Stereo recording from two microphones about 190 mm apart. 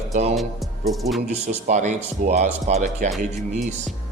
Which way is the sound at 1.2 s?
35° right (ahead or behind).